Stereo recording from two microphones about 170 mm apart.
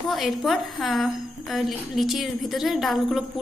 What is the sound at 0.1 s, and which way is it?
A woman's voice, centre (ahead or behind).